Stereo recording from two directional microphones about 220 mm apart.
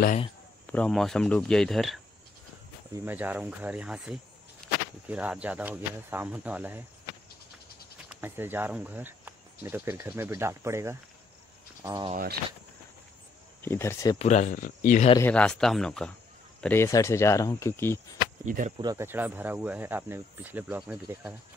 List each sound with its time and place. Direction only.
0.7 s speech: 5° left (ahead or behind)
4.6 s a sound: 5° left (ahead or behind)
5.0 s speech: 5° right (ahead or behind)
8.1 s speech: 10° right (ahead or behind)
12.1 s speech: 40° right (ahead or behind)
13.6 s speech: 10° left (ahead or behind)
14.1 s speech: 30° left (ahead or behind)
15.1 s speech: 5° left (ahead or behind)
18.4 s speech: 35° right (ahead or behind)
18.8 s speech: 15° right (ahead or behind)